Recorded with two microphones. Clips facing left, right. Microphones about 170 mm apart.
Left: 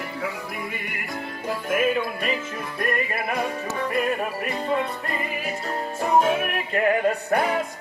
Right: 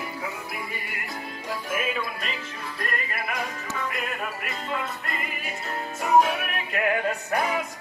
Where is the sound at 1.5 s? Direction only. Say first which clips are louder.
Left 7 dB; 55° left (ahead or behind).